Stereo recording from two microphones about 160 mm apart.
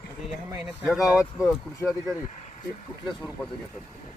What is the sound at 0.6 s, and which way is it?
Speech, 5° right (ahead or behind).